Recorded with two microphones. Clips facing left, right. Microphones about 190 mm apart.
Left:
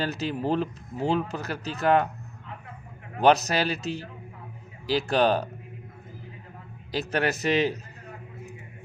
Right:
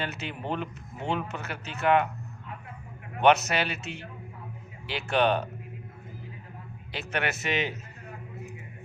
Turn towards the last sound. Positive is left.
turn(degrees=35)  # may be behind; listen again after turning